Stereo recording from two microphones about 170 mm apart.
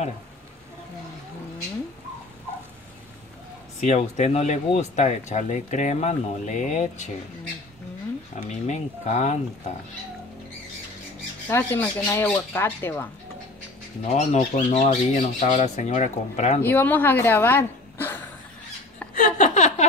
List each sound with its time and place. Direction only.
3.8 s speech: 45° left (ahead or behind)
8.4 s speech: 45° left (ahead or behind)
11.4 s speech: 10° left (ahead or behind)
14.0 s speech: 40° left (ahead or behind)
16.6 s speech: 10° left (ahead or behind)
19.1 s a sound: 45° left (ahead or behind)